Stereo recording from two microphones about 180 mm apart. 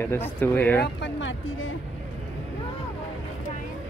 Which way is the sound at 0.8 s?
75° left (ahead or behind).